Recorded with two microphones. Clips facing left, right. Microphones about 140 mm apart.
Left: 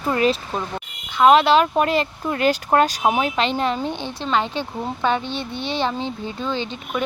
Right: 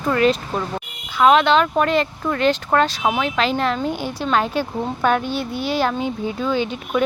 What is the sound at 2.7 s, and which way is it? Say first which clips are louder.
Speech: left 1 dB; 40° left (ahead or behind).